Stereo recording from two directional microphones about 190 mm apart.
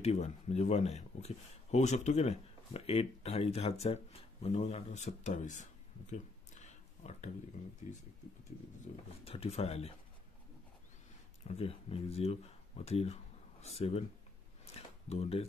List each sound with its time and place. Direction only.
0.0 s speech: 35° left (ahead or behind)
8.9 s speech: 45° left (ahead or behind)
9.2 s speech: 30° left (ahead or behind)
11.4 s speech: 30° left (ahead or behind)
15.0 s speech: 30° left (ahead or behind)